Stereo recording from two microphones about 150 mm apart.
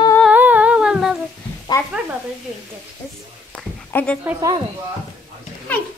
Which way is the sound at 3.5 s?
10° left (ahead or behind).